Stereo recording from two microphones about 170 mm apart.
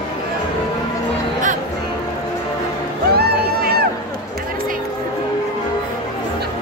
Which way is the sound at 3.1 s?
65° right (ahead or behind).